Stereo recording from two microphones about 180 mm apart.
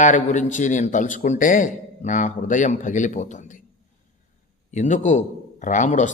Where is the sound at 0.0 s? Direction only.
45° left (ahead or behind).